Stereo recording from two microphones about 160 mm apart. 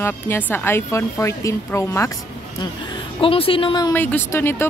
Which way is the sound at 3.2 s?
35° left (ahead or behind).